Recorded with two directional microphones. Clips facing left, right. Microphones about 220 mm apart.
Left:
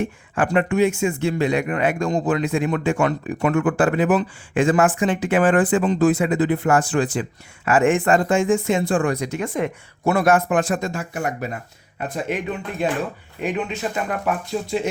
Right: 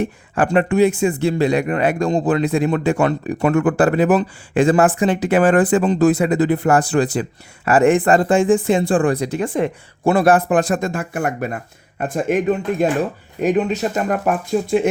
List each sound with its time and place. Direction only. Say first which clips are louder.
0.5 s a man's voice: right 4 dB; 35° right (ahead or behind); by 14.8 s 50° right (ahead or behind)